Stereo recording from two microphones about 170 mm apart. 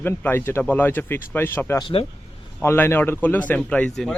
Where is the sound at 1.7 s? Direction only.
30° left (ahead or behind).